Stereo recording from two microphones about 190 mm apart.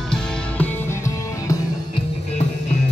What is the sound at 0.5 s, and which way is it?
Music, 10° left (ahead or behind).